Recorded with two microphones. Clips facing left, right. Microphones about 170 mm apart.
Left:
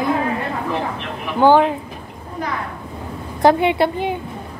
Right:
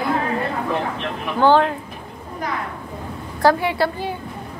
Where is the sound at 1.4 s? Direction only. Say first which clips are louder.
Left 2 dB; 15° left (ahead or behind).